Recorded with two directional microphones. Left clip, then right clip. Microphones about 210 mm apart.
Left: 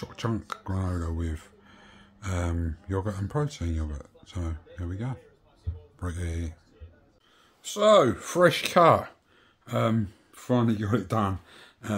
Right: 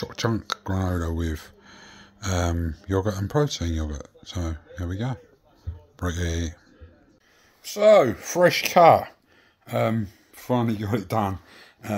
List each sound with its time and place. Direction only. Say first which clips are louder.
0.0 s speech: right 6 dB; 25° right (ahead or behind)
7.7 s speech: right 4 dB; 10° left (ahead or behind)